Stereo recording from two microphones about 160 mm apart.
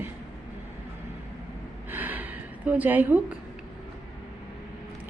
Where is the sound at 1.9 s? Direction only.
10° right (ahead or behind).